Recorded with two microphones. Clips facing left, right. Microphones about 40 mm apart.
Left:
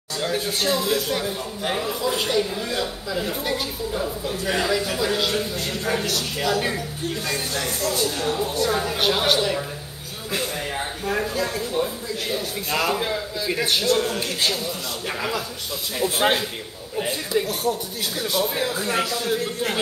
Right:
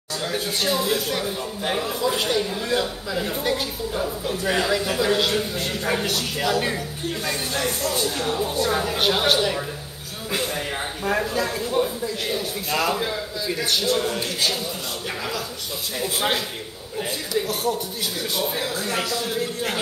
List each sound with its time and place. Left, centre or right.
0.2 s a man's voice: centre
7.8 s speech: centre
8.2 s a man's voice: centre
13.5 s a man's voice: centre
13.9 s a man's voice: centre
16.2 s a man's voice: left
18.3 s a man's voice: centre
18.7 s speech: centre